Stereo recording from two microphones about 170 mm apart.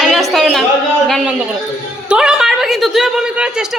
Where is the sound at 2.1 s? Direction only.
5° right (ahead or behind).